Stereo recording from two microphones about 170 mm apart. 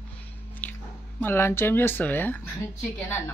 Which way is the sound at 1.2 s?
15° left (ahead or behind).